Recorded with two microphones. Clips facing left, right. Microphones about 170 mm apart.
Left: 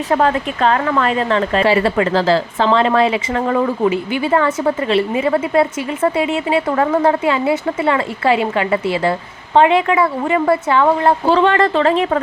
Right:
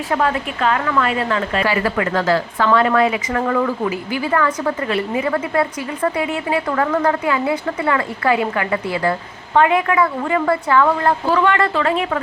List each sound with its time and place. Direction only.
0.1 s a woman's voice: 35° left (ahead or behind)